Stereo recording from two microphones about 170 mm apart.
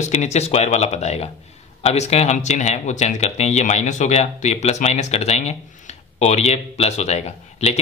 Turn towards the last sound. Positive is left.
turn(degrees=40)  # may be behind; listen again after turning